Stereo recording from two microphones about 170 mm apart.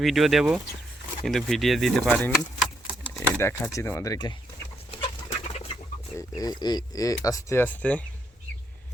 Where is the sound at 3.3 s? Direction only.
15° left (ahead or behind).